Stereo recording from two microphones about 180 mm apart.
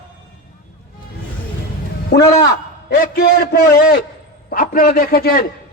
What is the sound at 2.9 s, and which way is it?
A man's voice, 55° left (ahead or behind).